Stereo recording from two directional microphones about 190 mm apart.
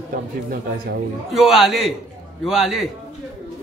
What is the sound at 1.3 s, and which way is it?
Speech, centre (ahead or behind).